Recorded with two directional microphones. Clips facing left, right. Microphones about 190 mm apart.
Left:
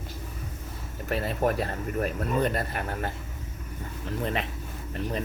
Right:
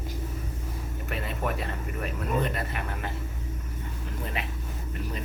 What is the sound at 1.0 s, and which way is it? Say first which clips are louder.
Speech: left 6 dB; 35° left (ahead or behind).